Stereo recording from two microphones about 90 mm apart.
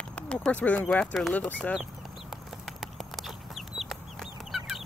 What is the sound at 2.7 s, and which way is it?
Chicken, centre (ahead or behind).